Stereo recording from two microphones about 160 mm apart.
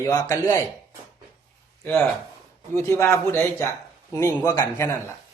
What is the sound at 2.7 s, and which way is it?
Speech, 20° left (ahead or behind).